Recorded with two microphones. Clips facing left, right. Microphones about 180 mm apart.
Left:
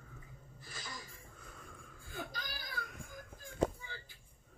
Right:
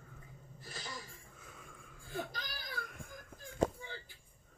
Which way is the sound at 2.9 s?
Centre (ahead or behind).